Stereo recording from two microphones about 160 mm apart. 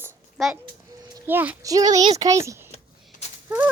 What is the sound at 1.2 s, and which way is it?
Speech, 10° right (ahead or behind).